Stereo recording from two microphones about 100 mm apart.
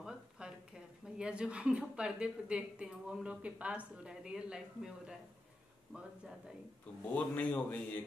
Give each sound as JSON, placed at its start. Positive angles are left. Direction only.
{"t": 0.0, "sound": "a woman's voice", "side_deg": -5}
{"t": 7.1, "sound": "speech", "side_deg": 15}